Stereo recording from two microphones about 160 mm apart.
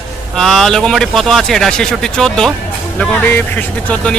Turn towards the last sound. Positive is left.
turn(degrees=5)  # may be behind; listen again after turning